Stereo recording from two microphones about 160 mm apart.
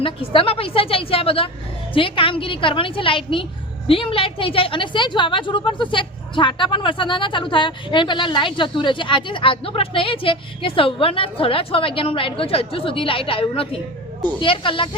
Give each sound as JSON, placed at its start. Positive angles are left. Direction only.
{"t": 0.0, "sound": "a woman's voice", "side_deg": 35}